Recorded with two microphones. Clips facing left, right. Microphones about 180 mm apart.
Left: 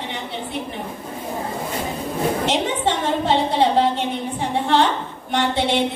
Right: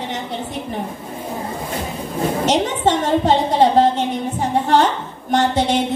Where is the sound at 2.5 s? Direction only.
45° right (ahead or behind).